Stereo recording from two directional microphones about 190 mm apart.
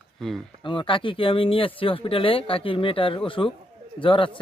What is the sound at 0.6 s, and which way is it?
Speech, 25° left (ahead or behind).